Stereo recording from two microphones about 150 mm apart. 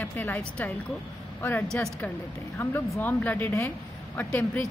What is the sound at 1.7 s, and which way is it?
Speech, 5° left (ahead or behind).